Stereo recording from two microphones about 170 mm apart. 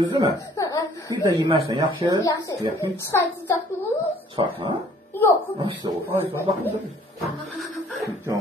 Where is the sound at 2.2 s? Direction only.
20° left (ahead or behind).